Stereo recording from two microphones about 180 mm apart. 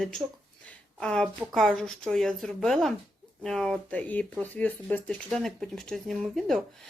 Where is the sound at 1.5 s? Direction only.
5° left (ahead or behind).